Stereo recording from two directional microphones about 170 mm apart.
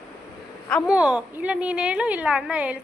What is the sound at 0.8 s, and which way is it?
A woman's voice, 5° right (ahead or behind).